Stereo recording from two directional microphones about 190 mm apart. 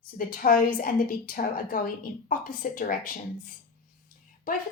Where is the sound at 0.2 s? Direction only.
50° left (ahead or behind).